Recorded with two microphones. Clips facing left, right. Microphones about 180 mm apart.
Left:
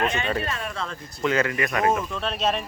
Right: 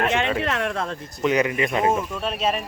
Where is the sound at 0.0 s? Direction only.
85° right; by 0.9 s 65° right (ahead or behind).